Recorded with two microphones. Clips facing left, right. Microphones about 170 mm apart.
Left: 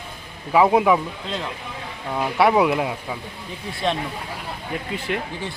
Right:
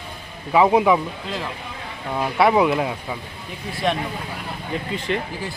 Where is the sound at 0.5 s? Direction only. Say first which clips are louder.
Even; centre (ahead or behind).